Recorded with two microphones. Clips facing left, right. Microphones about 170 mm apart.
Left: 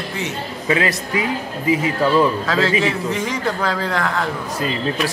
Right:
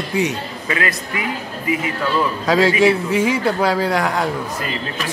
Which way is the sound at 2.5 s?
10° right (ahead or behind).